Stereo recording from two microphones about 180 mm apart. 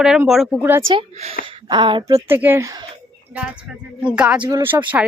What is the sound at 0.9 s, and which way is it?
Speech, 35° right (ahead or behind).